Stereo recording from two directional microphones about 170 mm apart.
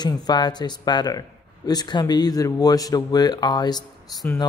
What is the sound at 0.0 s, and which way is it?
Speech, 25° left (ahead or behind).